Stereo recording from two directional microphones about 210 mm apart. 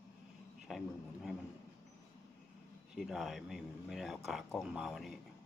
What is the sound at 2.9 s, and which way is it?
Speech, centre (ahead or behind).